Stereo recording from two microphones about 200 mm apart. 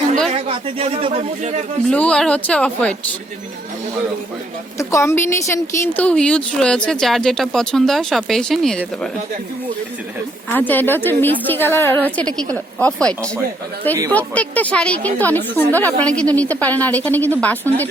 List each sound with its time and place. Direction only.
0.3 s speech: 30° right (ahead or behind)
1.9 s speech: 5° left (ahead or behind)
4.8 s speech: 15° left (ahead or behind)
10.5 s a woman's voice: 10° left (ahead or behind)